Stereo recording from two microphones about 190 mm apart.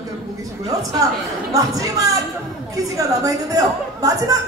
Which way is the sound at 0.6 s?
20° right (ahead or behind).